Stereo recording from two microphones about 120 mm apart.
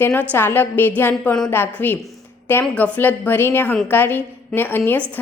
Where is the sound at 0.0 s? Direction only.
15° left (ahead or behind).